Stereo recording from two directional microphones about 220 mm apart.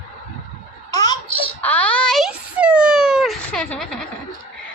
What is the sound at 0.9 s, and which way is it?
Baby laughter, 20° left (ahead or behind).